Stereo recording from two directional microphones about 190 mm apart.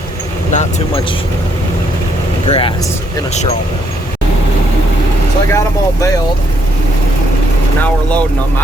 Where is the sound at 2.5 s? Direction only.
30° left (ahead or behind).